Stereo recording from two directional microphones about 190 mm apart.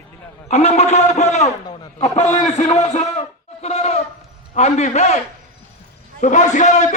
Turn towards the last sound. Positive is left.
turn(degrees=40)  # may be behind; listen again after turning